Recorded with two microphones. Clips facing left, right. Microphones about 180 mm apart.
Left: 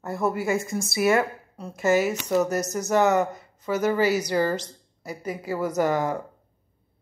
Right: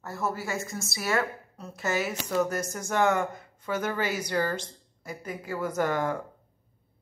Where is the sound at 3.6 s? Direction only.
5° left (ahead or behind).